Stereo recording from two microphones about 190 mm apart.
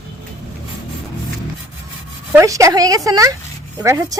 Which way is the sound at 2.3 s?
15° right (ahead or behind).